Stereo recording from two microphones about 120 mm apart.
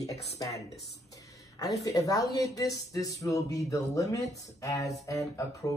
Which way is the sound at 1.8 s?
30° left (ahead or behind).